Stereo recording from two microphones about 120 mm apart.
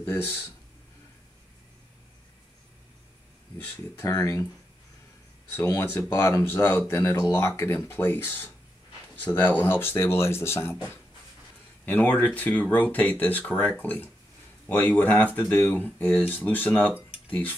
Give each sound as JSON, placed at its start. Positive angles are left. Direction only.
{"t": 0.0, "sound": "speech", "side_deg": 20}
{"t": 3.5, "sound": "speech", "side_deg": 20}
{"t": 5.6, "sound": "speech", "side_deg": 25}
{"t": 11.8, "sound": "speech", "side_deg": 15}